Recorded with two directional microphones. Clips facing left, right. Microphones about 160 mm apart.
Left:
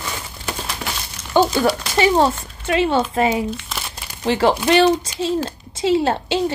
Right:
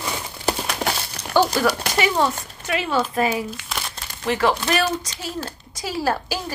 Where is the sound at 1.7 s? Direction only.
30° left (ahead or behind).